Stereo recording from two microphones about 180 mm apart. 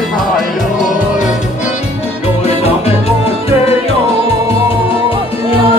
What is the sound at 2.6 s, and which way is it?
Music, 35° left (ahead or behind).